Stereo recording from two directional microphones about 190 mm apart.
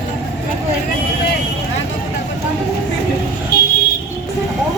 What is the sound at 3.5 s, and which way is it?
Vehicle, 55° left (ahead or behind).